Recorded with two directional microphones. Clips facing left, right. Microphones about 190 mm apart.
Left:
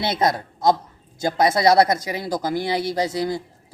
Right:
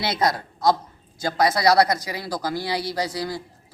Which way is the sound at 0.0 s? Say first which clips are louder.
Left 2 dB; 25° left (ahead or behind).